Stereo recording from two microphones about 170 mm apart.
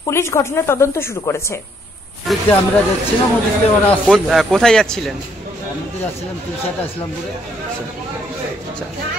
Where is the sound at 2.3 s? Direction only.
Centre (ahead or behind).